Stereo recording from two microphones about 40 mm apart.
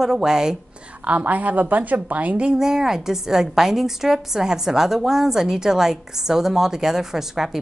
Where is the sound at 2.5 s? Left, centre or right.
Centre.